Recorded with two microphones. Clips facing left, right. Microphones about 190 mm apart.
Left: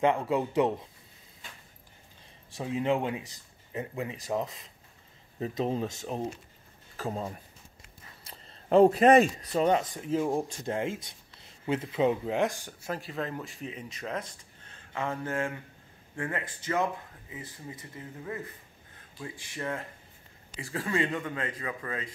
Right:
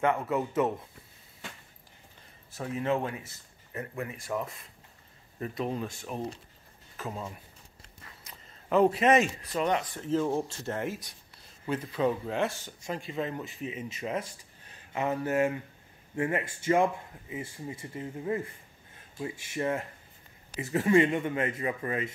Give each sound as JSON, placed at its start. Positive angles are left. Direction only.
{"t": 0.0, "sound": "speech", "side_deg": 15}
{"t": 2.5, "sound": "a man's voice", "side_deg": 20}
{"t": 9.9, "sound": "speech", "side_deg": 10}